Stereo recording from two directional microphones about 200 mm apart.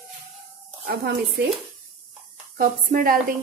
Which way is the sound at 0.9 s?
55° right (ahead or behind).